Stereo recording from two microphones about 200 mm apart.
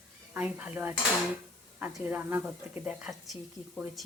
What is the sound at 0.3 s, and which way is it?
Speech, 5° right (ahead or behind).